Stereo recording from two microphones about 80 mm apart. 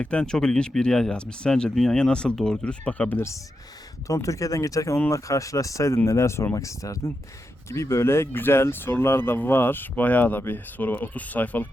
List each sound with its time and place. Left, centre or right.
0.0 s speech: centre
4.0 s speech: left